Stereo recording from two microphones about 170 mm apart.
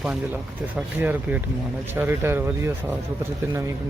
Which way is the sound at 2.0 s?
15° right (ahead or behind).